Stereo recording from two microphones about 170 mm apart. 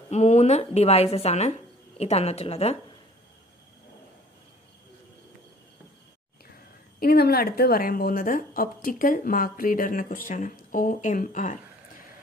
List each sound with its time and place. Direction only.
0.1 s speech: 40° left (ahead or behind)
7.0 s a woman's voice: 65° left (ahead or behind); by 11.5 s 50° left (ahead or behind)